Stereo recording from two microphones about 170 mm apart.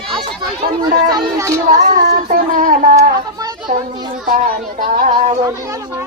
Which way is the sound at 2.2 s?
50° right (ahead or behind).